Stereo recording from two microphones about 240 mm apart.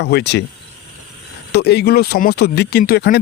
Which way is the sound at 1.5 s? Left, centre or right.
Left.